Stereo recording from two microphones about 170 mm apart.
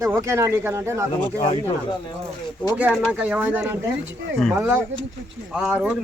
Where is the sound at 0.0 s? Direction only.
15° right (ahead or behind).